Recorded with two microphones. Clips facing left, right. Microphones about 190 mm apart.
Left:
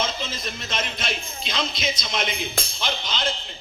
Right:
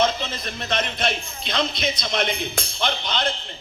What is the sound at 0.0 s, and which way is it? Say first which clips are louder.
A man's voice: right 5 dB; 60° right (ahead or behind).